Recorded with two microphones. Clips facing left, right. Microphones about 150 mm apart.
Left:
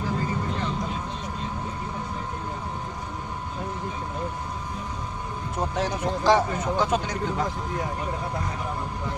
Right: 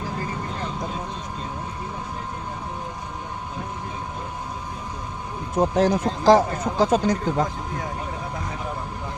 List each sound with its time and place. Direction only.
5.5 s speech: 40° right (ahead or behind)